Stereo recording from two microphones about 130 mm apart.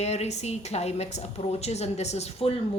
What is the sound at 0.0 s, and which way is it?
Speech, 55° left (ahead or behind).